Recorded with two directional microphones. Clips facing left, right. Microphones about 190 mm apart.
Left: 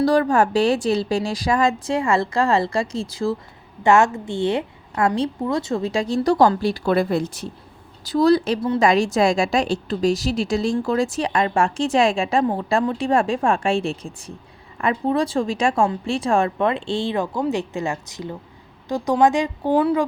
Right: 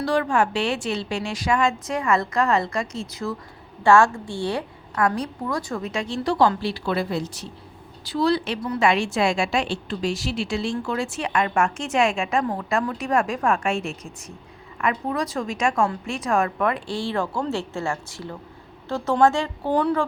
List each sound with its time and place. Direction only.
0.0 s a woman's voice: 40° left (ahead or behind)
3.8 s a woman's voice: 20° left (ahead or behind)